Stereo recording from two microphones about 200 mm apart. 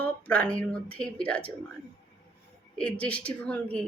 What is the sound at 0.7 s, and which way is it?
Speech, 5° left (ahead or behind).